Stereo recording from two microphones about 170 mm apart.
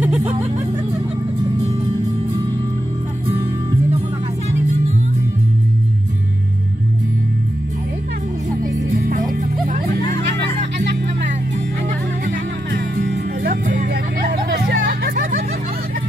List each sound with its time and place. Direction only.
8.9 s music: 55° right (ahead or behind)
12.3 s music: 60° right (ahead or behind)